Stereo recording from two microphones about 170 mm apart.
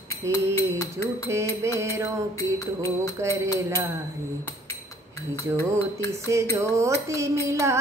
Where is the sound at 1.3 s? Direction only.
15° right (ahead or behind).